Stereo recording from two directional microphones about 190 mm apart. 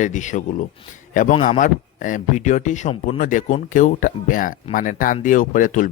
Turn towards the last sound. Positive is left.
turn(degrees=45)  # may be behind; listen again after turning